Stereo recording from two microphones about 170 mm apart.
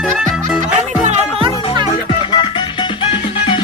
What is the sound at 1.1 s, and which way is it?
Music, 30° right (ahead or behind).